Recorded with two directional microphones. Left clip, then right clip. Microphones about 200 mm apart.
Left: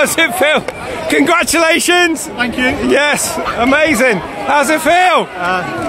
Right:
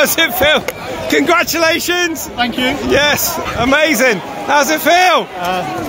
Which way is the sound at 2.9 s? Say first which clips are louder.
Right 1 dB; 15° left (ahead or behind).